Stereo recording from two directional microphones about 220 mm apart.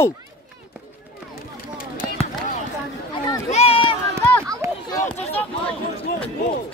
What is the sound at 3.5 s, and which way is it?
Run, 25° left (ahead or behind).